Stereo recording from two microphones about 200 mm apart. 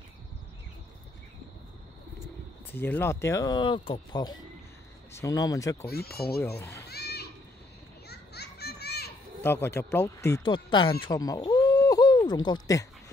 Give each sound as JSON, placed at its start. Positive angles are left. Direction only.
{"t": 2.7, "sound": "speech", "side_deg": 10}
{"t": 5.9, "sound": "speech", "side_deg": 50}
{"t": 6.9, "sound": "children playing", "side_deg": 55}
{"t": 9.4, "sound": "speech", "side_deg": 10}
{"t": 11.1, "sound": "a sound", "side_deg": 20}